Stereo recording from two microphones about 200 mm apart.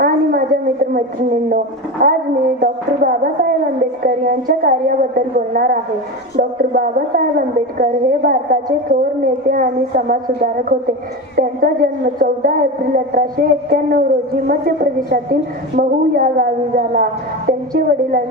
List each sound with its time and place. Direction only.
0.0 s a sound: 45° right (ahead or behind)
1.5 s a woman's voice: 45° right (ahead or behind)
15.1 s a woman's voice: 45° right (ahead or behind)